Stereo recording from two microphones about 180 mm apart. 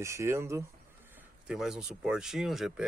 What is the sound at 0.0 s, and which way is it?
Speech, 15° right (ahead or behind).